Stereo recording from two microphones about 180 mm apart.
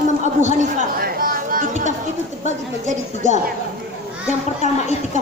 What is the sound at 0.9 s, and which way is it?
A woman's voice, 55° right (ahead or behind).